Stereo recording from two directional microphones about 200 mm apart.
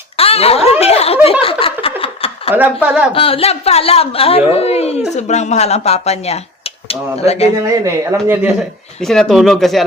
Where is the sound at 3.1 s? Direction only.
30° left (ahead or behind).